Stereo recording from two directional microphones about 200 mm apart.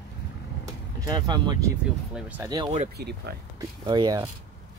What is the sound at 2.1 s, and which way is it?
Speech, 5° right (ahead or behind).